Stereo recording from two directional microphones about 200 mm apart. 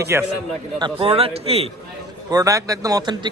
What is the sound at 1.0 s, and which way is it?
Speech, 30° right (ahead or behind).